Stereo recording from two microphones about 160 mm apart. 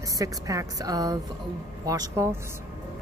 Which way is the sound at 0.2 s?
20° right (ahead or behind).